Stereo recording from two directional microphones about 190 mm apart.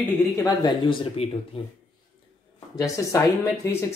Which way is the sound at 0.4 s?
25° left (ahead or behind).